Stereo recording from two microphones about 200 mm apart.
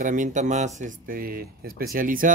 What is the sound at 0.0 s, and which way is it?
Speech, 40° right (ahead or behind).